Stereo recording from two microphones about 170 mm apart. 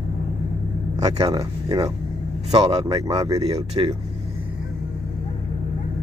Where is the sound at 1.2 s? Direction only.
25° right (ahead or behind).